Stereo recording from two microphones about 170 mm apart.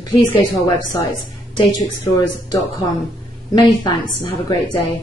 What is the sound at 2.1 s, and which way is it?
Speech, 20° left (ahead or behind).